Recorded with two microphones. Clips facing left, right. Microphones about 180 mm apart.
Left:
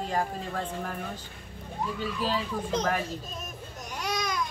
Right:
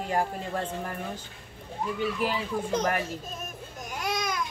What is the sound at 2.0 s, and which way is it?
Speech, 15° right (ahead or behind).